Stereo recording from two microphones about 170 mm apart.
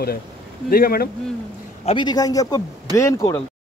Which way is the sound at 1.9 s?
25° left (ahead or behind).